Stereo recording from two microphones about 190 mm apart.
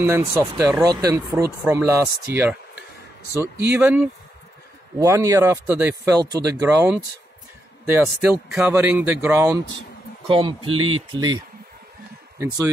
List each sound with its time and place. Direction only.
0.0 s a man's voice: 15° right (ahead or behind)
3.7 s a man's voice: 10° right (ahead or behind)
10.2 s a man's voice: 25° right (ahead or behind)